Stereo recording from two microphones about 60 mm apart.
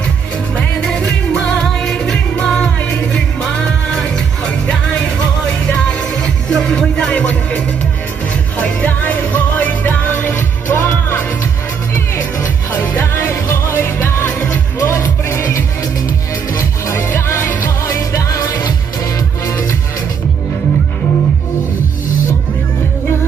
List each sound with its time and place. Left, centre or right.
0.9 s music: centre
2.7 s music: left
3.1 s music: centre; by 17.5 s left
17.8 s music: left